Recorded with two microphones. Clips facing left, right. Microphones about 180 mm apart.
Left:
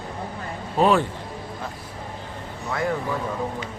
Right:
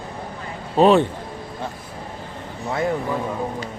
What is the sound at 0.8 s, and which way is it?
Speech, 20° right (ahead or behind).